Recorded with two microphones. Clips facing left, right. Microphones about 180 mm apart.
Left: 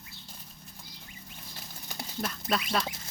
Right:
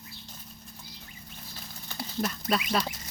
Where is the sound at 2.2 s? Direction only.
Centre (ahead or behind).